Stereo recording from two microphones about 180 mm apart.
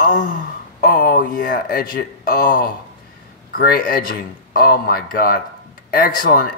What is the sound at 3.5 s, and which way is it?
A man's voice, 55° left (ahead or behind).